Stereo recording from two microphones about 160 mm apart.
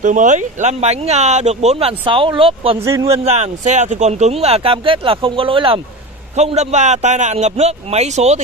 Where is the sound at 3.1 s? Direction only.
45° right (ahead or behind).